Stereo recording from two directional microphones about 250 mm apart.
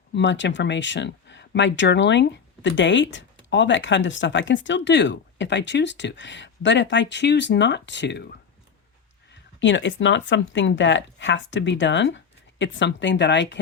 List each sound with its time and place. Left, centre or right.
0.1 s speech: left
9.6 s speech: left